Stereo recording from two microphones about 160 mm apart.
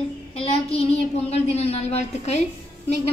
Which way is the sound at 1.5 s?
40° left (ahead or behind).